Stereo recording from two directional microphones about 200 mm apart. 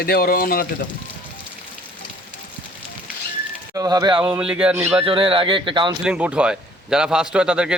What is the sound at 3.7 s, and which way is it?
Speech, 20° right (ahead or behind).